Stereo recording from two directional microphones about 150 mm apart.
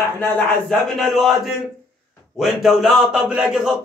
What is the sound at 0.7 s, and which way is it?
A man's voice, centre (ahead or behind).